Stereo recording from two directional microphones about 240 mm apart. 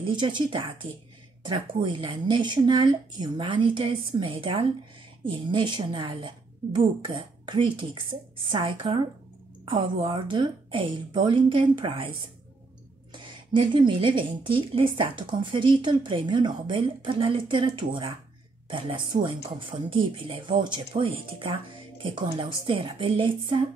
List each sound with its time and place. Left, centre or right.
0.0 s speech: centre